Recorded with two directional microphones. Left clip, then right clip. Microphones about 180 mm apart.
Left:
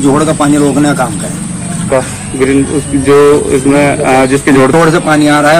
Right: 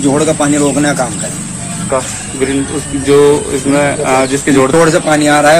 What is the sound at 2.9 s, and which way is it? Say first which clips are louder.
Speech: left 2 dB; 35° left (ahead or behind).